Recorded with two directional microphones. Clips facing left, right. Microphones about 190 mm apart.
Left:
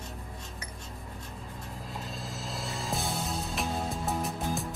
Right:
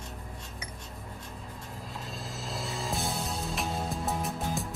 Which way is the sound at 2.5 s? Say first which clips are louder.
Right 1 dB; centre (ahead or behind).